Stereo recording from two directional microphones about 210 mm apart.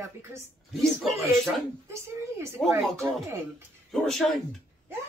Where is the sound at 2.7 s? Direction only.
15° right (ahead or behind).